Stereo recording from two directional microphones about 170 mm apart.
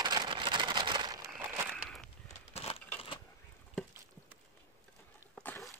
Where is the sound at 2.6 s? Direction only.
35° left (ahead or behind).